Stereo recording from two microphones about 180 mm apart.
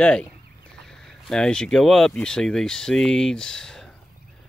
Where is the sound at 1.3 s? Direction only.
5° left (ahead or behind).